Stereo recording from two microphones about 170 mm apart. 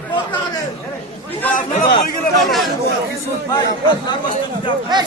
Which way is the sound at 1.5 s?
50° left (ahead or behind).